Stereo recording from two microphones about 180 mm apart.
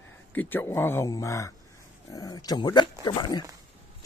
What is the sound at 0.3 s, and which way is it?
Speech, 10° left (ahead or behind).